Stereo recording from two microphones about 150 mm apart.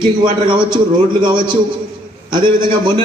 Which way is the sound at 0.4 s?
30° right (ahead or behind).